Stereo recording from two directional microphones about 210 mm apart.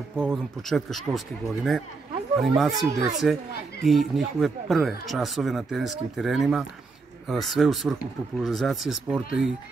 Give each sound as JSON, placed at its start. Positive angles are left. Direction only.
{"t": 0.3, "sound": "speech", "side_deg": 0}